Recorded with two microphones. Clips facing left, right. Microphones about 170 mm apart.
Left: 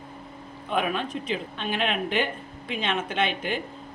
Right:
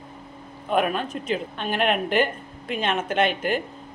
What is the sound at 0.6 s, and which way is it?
Speech, 45° right (ahead or behind).